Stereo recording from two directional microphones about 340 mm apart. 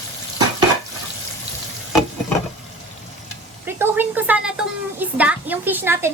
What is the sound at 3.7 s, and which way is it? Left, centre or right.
A woman's voice, centre.